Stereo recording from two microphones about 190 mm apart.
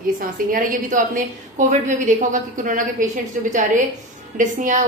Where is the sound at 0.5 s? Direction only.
45° right (ahead or behind).